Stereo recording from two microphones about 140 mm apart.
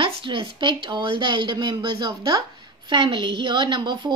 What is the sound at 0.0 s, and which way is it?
A woman's voice, 40° right (ahead or behind).